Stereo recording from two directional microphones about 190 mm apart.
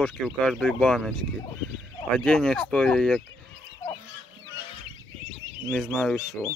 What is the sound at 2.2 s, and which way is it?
Speech, 5° left (ahead or behind).